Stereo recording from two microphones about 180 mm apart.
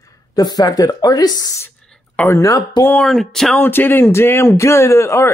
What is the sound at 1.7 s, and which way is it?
Speech, 5° left (ahead or behind).